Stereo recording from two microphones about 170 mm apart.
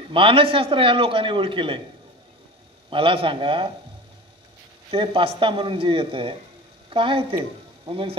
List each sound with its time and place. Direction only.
0.1 s a man's voice: 30° right (ahead or behind)
2.9 s a man's voice: 30° right (ahead or behind)
4.9 s a man's voice: 30° right (ahead or behind)